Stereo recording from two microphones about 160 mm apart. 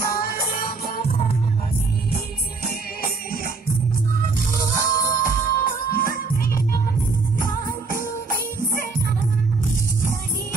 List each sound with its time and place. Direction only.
0.0 s music: 70° left (ahead or behind)
2.6 s music: 65° left (ahead or behind)
4.7 s music: 60° left (ahead or behind)